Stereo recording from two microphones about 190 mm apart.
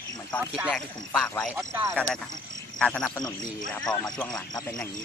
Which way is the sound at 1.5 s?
10° right (ahead or behind).